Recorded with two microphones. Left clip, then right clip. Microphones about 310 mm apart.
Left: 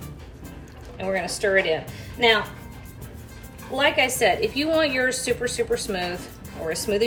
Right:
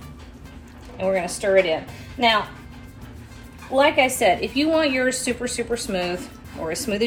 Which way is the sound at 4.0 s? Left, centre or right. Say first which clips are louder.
Right 2 dB; centre.